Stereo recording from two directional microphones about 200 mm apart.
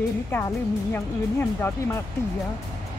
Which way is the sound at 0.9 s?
10° left (ahead or behind).